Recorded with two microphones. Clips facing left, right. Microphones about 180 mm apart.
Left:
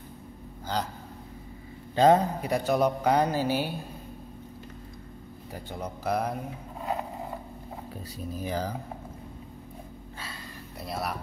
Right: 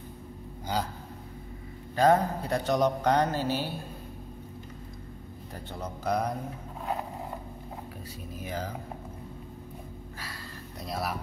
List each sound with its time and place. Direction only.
2.0 s a man's voice: 25° left (ahead or behind)
2.4 s speech: 10° left (ahead or behind)
5.7 s speech: 10° left (ahead or behind)
8.4 s speech: 35° left (ahead or behind)
10.9 s speech: centre (ahead or behind)